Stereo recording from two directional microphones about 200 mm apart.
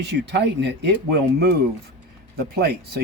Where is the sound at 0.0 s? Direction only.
60° right (ahead or behind).